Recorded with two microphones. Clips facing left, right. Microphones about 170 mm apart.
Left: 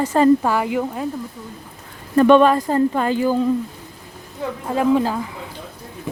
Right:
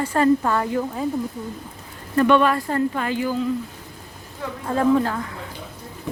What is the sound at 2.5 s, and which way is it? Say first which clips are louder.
Speech: left 5 dB; 20° left (ahead or behind).